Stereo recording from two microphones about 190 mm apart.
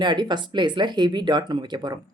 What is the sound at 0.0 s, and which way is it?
Speech, 25° right (ahead or behind).